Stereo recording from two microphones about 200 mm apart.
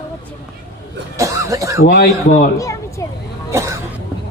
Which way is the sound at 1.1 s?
15° right (ahead or behind).